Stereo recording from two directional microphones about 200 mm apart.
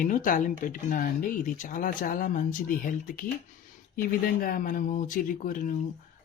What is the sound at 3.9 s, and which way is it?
A woman's voice, 45° left (ahead or behind).